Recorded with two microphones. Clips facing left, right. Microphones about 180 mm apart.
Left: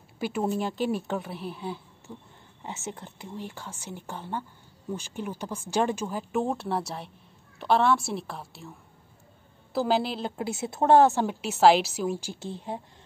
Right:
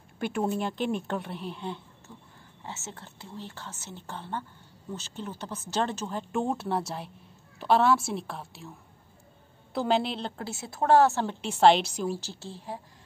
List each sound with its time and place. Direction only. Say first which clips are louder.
0.2 s speech: left 1 dB; centre (ahead or behind)
2.1 s speech: left 6 dB; 15° left (ahead or behind)
10.3 s speech: left 6 dB; 15° left (ahead or behind)
12.1 s speech: left 2 dB; 15° left (ahead or behind)